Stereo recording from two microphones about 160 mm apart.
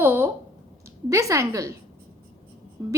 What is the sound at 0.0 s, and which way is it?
A woman's voice, 15° right (ahead or behind).